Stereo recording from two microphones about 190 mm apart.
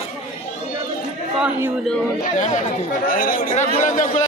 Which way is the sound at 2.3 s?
40° left (ahead or behind).